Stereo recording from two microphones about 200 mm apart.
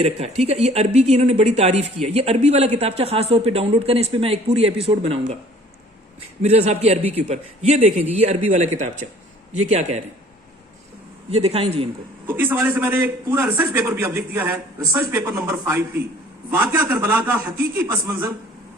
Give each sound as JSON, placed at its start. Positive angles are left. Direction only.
{"t": 0.0, "sound": "a woman's voice", "side_deg": -30}
{"t": 6.4, "sound": "a woman's voice", "side_deg": -35}
{"t": 11.3, "sound": "a man's voice", "side_deg": -30}
{"t": 12.3, "sound": "a man's voice", "side_deg": -10}